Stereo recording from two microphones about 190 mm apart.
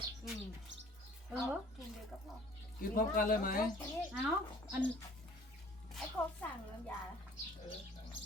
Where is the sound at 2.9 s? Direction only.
50° left (ahead or behind).